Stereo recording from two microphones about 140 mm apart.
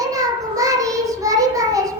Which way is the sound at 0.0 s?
25° right (ahead or behind).